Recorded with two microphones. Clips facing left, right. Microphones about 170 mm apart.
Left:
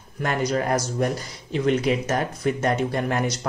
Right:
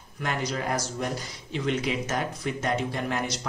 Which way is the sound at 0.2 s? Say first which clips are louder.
Left 6 dB; 50° left (ahead or behind).